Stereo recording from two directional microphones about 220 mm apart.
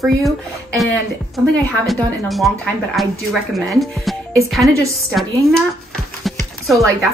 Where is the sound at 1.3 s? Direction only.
Centre (ahead or behind).